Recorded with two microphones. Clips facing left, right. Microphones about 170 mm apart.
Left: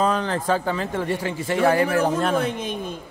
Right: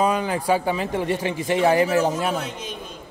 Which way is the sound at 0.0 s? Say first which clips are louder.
Right 1 dB; 10° right (ahead or behind).